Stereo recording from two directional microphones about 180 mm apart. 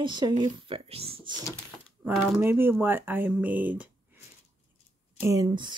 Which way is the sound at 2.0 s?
10° right (ahead or behind).